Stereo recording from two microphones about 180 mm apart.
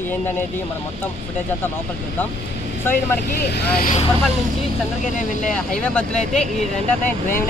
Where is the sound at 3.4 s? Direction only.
65° left (ahead or behind).